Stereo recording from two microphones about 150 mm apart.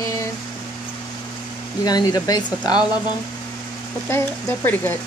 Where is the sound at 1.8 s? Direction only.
25° left (ahead or behind).